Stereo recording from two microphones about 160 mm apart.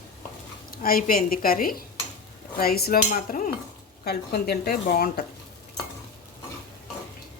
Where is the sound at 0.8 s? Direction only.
65° left (ahead or behind).